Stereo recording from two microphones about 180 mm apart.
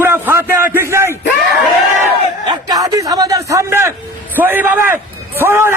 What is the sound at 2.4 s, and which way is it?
A man's voice, 20° right (ahead or behind).